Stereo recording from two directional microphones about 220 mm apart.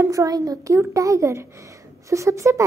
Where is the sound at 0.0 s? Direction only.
15° right (ahead or behind).